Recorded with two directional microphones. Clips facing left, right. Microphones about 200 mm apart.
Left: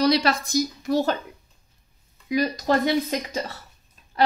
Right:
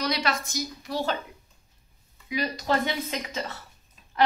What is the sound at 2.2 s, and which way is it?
Speech, 40° left (ahead or behind).